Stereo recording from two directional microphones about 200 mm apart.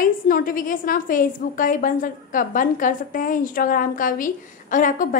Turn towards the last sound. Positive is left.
turn(degrees=40)  # may be behind; listen again after turning